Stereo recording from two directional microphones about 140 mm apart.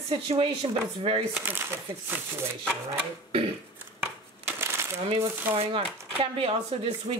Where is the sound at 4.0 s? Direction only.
15° right (ahead or behind).